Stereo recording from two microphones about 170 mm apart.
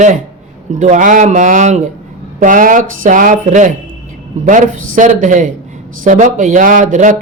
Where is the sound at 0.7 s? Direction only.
45° right (ahead or behind).